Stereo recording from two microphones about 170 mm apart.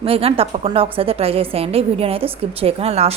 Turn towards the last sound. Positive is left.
turn(degrees=-40)  # may be behind; listen again after turning